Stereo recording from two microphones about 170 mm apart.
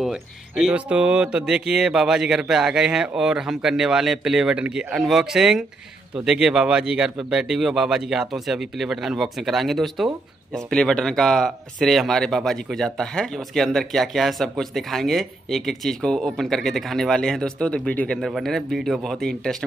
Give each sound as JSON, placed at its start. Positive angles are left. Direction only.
{"t": 0.0, "sound": "speech", "side_deg": -5}